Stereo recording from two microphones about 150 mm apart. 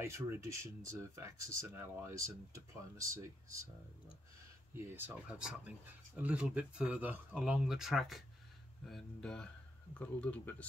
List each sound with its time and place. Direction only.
0.0 s speech: 20° right (ahead or behind)
4.7 s speech: 15° right (ahead or behind); by 10.5 s 10° left (ahead or behind)